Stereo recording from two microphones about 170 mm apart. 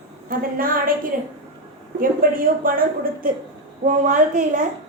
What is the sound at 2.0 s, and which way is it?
A woman's voice, 55° right (ahead or behind).